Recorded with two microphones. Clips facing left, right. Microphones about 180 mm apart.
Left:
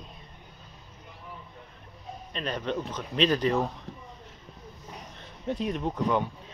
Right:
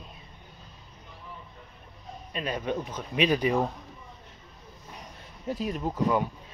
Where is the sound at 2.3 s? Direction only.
10° right (ahead or behind).